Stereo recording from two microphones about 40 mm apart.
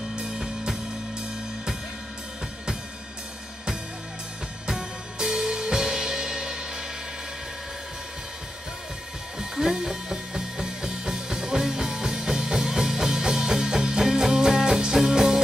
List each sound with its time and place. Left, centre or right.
0.1 s music: centre
4.6 s music: centre
9.4 s music: centre